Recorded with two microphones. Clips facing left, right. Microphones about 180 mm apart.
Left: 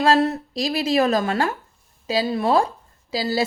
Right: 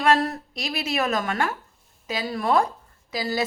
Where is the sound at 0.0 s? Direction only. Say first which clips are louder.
Left 3 dB; 25° left (ahead or behind).